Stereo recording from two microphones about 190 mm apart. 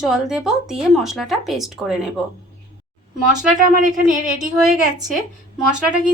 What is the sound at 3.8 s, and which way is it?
Speech, 40° right (ahead or behind).